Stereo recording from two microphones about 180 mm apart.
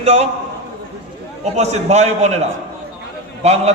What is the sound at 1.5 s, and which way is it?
Speech, 40° right (ahead or behind).